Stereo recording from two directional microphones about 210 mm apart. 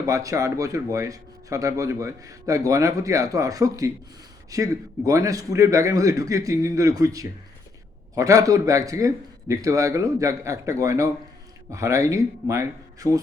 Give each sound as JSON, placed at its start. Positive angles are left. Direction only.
{"t": 0.0, "sound": "a man's voice", "side_deg": -15}